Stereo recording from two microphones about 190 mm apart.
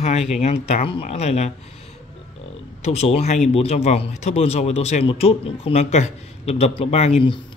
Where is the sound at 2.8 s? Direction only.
35° left (ahead or behind).